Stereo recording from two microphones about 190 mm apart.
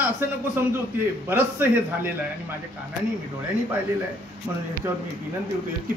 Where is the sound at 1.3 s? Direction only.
10° right (ahead or behind).